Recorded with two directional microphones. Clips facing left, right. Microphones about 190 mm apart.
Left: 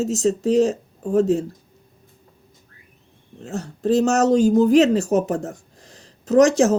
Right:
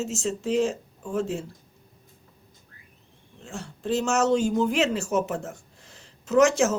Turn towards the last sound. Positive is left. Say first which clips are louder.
# left 5 dB
turn(degrees=35)  # may be behind; listen again after turning